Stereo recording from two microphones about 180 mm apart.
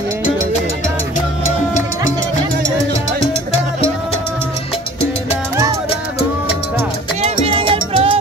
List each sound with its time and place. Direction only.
7.2 s music: 35° right (ahead or behind)